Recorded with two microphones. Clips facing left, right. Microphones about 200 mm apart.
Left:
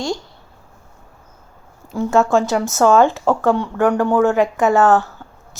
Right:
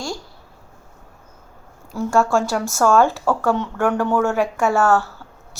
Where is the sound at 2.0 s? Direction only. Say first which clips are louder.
Left 3 dB; 20° left (ahead or behind).